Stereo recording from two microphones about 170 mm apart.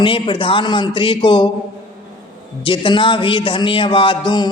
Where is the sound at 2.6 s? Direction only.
30° left (ahead or behind).